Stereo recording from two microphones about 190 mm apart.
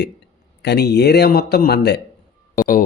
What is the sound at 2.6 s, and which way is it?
Speech, 50° left (ahead or behind).